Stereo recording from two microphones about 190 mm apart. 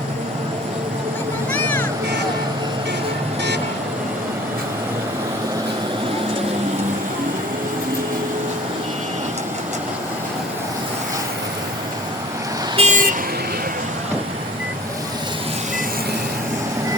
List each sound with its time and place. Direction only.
1.5 s vehicle: 10° left (ahead or behind)
12.7 s vehicle: 35° right (ahead or behind)